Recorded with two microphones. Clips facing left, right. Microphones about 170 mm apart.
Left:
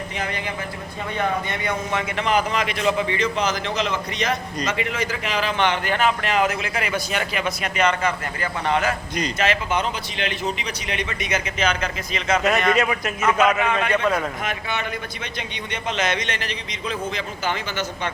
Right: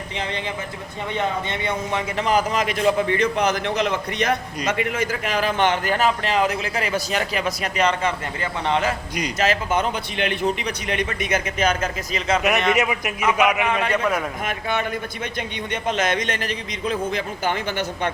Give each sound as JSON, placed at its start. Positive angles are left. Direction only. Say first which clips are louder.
{"t": 1.5, "sound": "a man's voice", "louder": "right 1 dB", "side_deg": -30}
{"t": 9.4, "sound": "a man's voice", "louder": "right 2 dB", "side_deg": -40}
{"t": 10.2, "sound": "a man's voice", "louder": "right 5 dB", "side_deg": -55}
{"t": 12.4, "sound": "a man's voice", "louder": "left 1 dB", "side_deg": -20}
{"t": 14.4, "sound": "a man's voice", "louder": "right 3 dB", "side_deg": -50}